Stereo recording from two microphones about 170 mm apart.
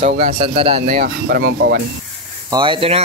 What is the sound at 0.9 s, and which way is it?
Speech, 65° right (ahead or behind).